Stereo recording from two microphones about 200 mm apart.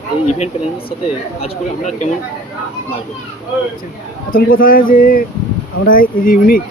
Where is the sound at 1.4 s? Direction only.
40° left (ahead or behind).